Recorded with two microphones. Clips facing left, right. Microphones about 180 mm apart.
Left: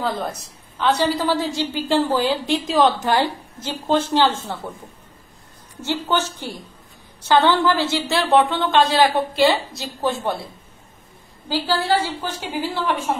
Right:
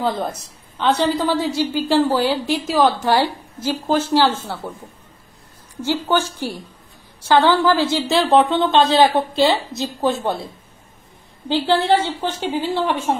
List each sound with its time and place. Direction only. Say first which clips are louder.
0.7 s a woman's voice: right 1 dB; 15° right (ahead or behind)
5.8 s a woman's voice: right 3 dB; 10° right (ahead or behind)
11.4 s a woman's voice: right 4 dB; 25° right (ahead or behind)